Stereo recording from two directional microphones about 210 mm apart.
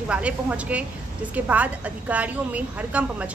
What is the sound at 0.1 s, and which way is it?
A woman's voice, 5° right (ahead or behind).